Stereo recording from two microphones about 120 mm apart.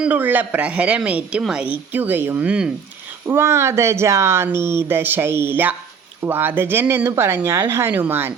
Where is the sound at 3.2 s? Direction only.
20° right (ahead or behind).